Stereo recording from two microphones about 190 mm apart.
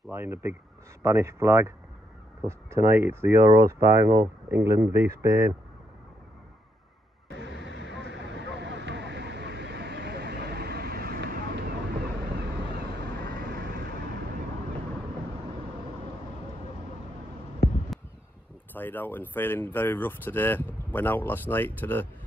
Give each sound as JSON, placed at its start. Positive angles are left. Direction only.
{"t": 0.1, "sound": "speech", "side_deg": -10}
{"t": 7.2, "sound": "a sound", "side_deg": -65}
{"t": 7.9, "sound": "vehicle", "side_deg": -65}
{"t": 13.2, "sound": "vehicle", "side_deg": -55}
{"t": 18.7, "sound": "speech", "side_deg": 10}